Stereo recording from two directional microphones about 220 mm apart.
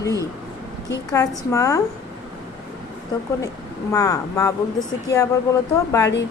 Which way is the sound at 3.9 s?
15° left (ahead or behind).